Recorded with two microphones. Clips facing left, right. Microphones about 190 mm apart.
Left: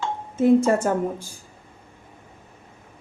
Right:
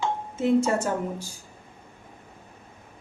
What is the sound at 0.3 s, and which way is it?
Speech, 55° left (ahead or behind).